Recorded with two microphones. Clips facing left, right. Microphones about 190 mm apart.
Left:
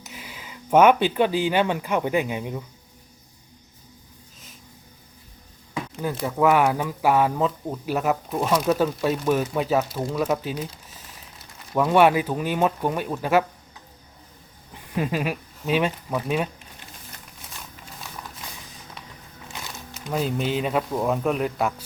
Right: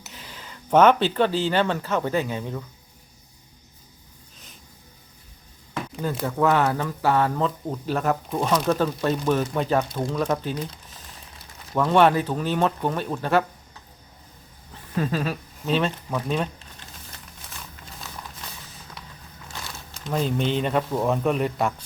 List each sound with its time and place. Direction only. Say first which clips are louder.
0.0 s speech: left 2 dB; 10° left (ahead or behind)
5.7 s a sound: even; 10° left (ahead or behind)
6.2 s speech: left 2 dB; 10° left (ahead or behind)
14.7 s speech: even; 15° left (ahead or behind)
19.5 s a sound: even; 15° left (ahead or behind)
20.1 s speech: right 1 dB; 5° left (ahead or behind)